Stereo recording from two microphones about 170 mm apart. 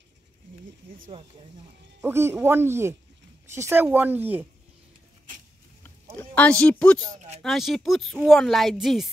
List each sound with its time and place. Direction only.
2.0 s speech: 15° right (ahead or behind)
6.1 s speech: 10° left (ahead or behind)
7.2 s speech: 40° right (ahead or behind)
7.4 s speech: centre (ahead or behind)